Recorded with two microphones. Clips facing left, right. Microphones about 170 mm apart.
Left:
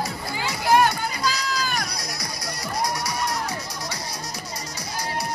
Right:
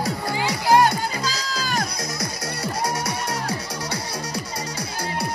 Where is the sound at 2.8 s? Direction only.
60° right (ahead or behind).